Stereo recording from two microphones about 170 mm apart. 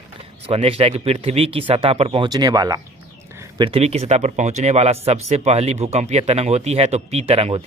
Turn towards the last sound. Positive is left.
turn(degrees=-35)  # may be behind; listen again after turning